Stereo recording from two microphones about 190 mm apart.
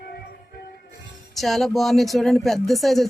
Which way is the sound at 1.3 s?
Centre (ahead or behind).